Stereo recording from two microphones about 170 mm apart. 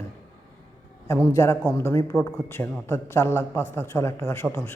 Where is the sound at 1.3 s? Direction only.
20° left (ahead or behind).